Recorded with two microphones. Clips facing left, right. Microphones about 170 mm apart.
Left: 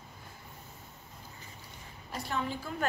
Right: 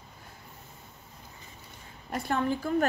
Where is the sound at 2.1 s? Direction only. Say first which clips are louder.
Right 6 dB; 55° right (ahead or behind).